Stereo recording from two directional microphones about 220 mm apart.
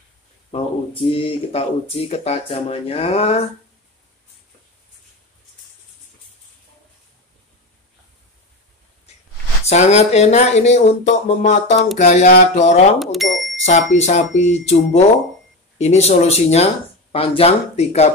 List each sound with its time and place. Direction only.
0.5 s speech: 25° left (ahead or behind)
9.1 s a sound: 30° left (ahead or behind)
9.7 s speech: 30° left (ahead or behind)
13.0 s speech: centre (ahead or behind)
13.7 s speech: 30° left (ahead or behind)